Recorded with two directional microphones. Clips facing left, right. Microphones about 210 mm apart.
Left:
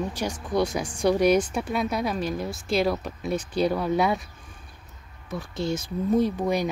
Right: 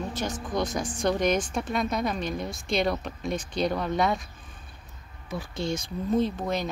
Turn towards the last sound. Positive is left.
turn(degrees=10)  # may be behind; listen again after turning